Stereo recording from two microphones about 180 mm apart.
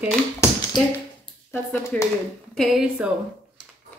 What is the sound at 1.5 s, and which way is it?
A woman's voice, 10° left (ahead or behind).